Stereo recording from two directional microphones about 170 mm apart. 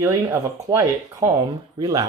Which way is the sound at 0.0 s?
15° right (ahead or behind).